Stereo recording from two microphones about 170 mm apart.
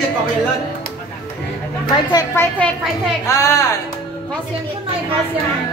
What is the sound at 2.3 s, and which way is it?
Speech, 15° left (ahead or behind).